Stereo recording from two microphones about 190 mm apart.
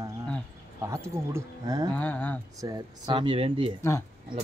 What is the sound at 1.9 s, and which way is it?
Speech, 10° left (ahead or behind).